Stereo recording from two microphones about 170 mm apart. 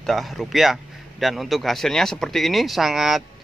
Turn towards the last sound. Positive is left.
turn(degrees=0)  # may be behind; listen again after turning